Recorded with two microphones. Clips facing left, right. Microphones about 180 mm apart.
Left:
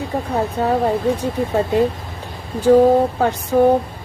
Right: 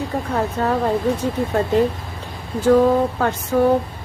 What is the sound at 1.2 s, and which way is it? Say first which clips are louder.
Speech: left 1 dB; 10° left (ahead or behind).